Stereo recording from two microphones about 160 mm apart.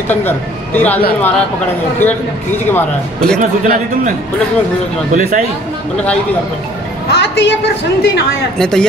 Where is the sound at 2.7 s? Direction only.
5° left (ahead or behind).